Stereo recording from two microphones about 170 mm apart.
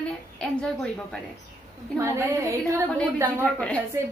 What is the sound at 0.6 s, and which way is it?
Speech, 5° left (ahead or behind).